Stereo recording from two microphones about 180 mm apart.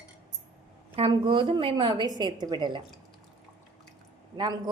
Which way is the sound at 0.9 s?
30° right (ahead or behind).